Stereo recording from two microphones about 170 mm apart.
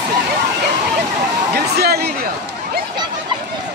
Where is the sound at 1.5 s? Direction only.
65° right (ahead or behind).